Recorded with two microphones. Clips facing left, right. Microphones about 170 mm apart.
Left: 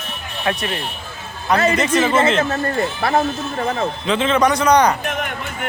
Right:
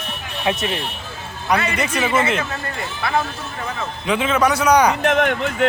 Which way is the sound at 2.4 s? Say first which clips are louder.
Left 8 dB; 40° left (ahead or behind).